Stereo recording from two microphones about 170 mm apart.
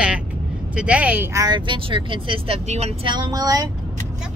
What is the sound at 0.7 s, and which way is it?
Speech, 5° right (ahead or behind).